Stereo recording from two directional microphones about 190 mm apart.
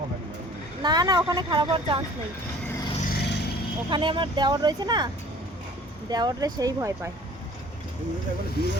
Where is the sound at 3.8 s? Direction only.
25° right (ahead or behind).